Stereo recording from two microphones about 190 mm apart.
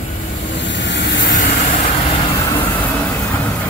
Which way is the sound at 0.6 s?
70° left (ahead or behind).